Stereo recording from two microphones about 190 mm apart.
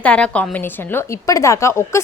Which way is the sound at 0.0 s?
5° left (ahead or behind).